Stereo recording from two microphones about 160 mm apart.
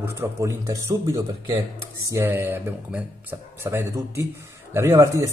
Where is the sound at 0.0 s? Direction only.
15° right (ahead or behind).